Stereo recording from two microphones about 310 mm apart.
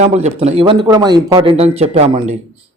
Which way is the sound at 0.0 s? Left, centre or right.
Right.